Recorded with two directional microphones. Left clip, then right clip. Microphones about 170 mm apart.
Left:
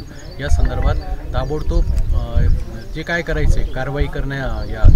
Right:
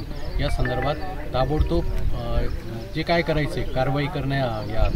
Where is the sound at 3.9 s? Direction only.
45° left (ahead or behind).